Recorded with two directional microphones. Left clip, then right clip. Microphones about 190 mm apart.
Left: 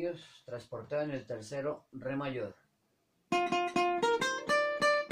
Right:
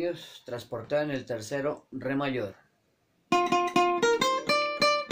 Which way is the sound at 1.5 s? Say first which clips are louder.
Right 5 dB; 10° right (ahead or behind).